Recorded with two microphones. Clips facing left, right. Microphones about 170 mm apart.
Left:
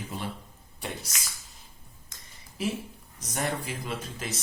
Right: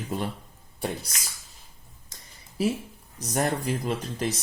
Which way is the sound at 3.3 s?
45° right (ahead or behind).